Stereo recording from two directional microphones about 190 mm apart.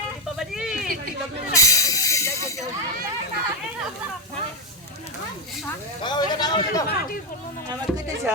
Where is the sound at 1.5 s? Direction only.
15° left (ahead or behind).